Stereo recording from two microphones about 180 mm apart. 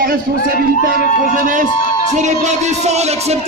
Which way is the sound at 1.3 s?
45° right (ahead or behind).